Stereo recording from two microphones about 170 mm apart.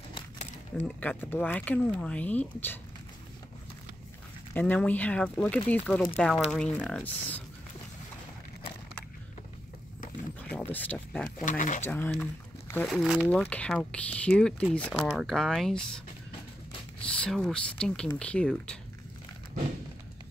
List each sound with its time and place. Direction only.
0.8 s speech: 10° left (ahead or behind)
4.6 s speech: 10° left (ahead or behind)
10.5 s speech: 10° left (ahead or behind)
11.3 s speech: 50° left (ahead or behind)
11.8 s speech: 10° left (ahead or behind)
12.8 s speech: centre (ahead or behind)
13.3 s speech: 5° left (ahead or behind)
17.0 s speech: 5° left (ahead or behind)